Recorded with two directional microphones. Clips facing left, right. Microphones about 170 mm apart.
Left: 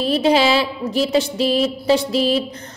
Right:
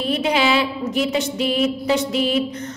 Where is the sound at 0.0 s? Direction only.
35° left (ahead or behind).